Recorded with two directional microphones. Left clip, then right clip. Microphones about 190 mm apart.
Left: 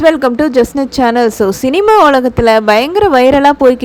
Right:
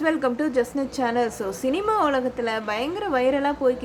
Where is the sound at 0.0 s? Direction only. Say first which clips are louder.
Left 14 dB; 40° left (ahead or behind).